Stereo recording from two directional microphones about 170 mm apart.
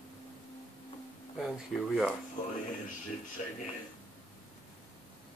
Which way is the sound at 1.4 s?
Centre (ahead or behind).